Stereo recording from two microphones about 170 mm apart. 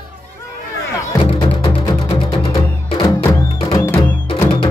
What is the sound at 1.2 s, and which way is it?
Music, 30° left (ahead or behind).